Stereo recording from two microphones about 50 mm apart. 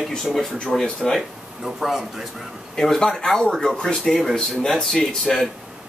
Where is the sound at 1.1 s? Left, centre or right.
Centre.